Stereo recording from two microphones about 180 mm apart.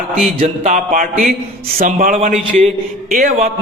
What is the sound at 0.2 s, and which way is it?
A man's voice, 45° right (ahead or behind).